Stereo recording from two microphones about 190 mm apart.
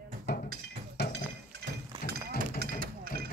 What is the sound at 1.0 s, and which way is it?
Chink, 60° left (ahead or behind).